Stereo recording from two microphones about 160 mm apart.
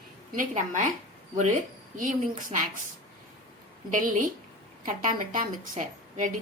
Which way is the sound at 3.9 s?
55° right (ahead or behind).